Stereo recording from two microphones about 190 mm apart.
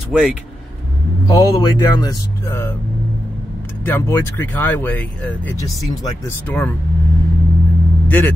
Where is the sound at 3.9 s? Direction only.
10° left (ahead or behind).